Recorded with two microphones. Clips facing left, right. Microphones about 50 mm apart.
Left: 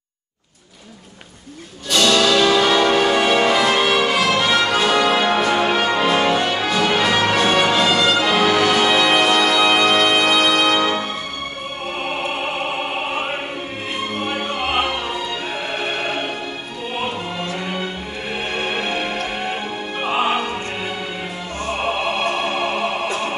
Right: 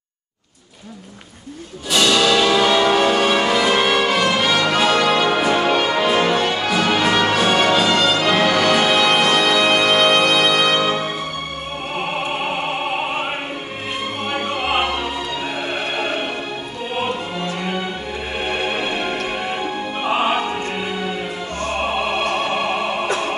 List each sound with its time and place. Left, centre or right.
1.9 s music: centre
4.4 s brass instrument: centre
6.6 s music: centre
20.0 s music: centre